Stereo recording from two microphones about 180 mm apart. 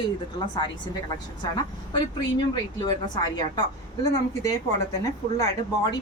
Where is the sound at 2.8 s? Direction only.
25° left (ahead or behind).